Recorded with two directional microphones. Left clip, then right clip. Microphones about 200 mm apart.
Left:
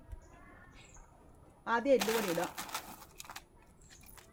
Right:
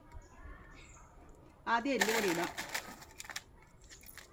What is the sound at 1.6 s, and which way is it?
Speech, 20° left (ahead or behind).